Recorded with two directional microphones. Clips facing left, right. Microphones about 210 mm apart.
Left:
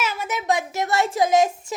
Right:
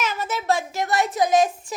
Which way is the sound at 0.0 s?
10° left (ahead or behind).